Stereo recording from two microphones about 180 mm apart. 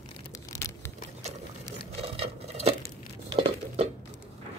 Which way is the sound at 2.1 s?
35° right (ahead or behind).